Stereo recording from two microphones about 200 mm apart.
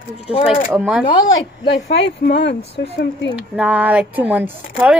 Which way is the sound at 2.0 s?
55° left (ahead or behind).